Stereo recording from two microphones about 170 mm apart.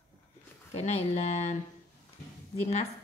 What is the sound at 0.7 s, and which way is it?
Speech, 40° left (ahead or behind).